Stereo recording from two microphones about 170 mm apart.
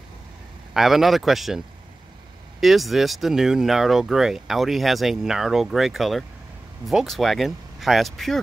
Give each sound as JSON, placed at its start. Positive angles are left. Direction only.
{"t": 0.7, "sound": "speech", "side_deg": 0}
{"t": 2.6, "sound": "speech", "side_deg": 0}